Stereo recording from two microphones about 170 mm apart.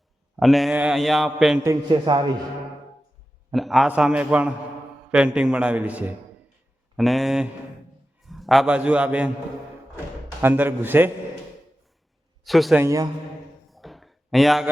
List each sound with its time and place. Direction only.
0.3 s a man's voice: centre (ahead or behind)
1.6 s a man's voice: 20° right (ahead or behind)
3.5 s a man's voice: centre (ahead or behind)
10.4 s a man's voice: 10° right (ahead or behind)
12.5 s a man's voice: centre (ahead or behind)
12.8 s a man's voice: 20° right (ahead or behind)
13.7 s a sound: centre (ahead or behind)